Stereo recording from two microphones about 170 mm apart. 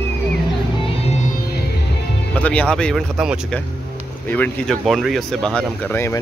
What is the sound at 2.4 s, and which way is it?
Speech, 10° left (ahead or behind).